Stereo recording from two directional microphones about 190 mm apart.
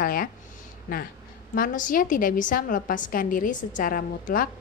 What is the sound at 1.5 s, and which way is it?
A woman's voice, 45° left (ahead or behind).